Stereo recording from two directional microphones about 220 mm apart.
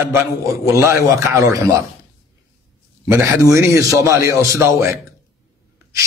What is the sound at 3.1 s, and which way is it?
A man's voice, 10° right (ahead or behind).